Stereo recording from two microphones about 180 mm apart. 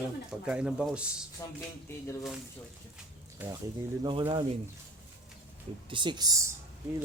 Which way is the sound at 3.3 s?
15° right (ahead or behind).